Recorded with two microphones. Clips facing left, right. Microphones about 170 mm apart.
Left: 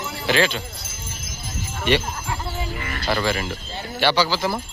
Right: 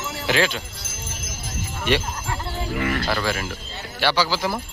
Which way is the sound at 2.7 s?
65° right (ahead or behind).